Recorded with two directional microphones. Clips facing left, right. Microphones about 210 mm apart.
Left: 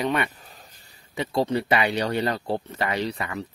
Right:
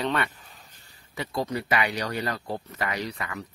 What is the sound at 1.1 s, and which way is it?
Speech, 25° left (ahead or behind).